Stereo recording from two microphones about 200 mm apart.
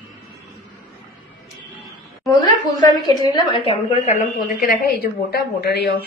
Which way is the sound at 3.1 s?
25° left (ahead or behind).